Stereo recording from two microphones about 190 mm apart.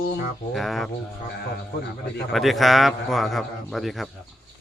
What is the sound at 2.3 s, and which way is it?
A man's voice, centre (ahead or behind).